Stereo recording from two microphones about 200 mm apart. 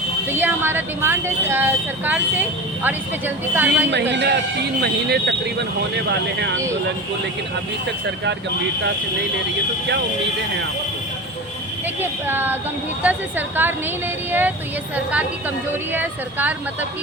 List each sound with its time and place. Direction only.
0.3 s speech: 10° right (ahead or behind)
4.1 s speech: 55° right (ahead or behind)
11.9 s speech: 10° right (ahead or behind)